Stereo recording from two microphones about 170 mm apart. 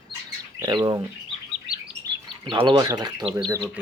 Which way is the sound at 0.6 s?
25° right (ahead or behind).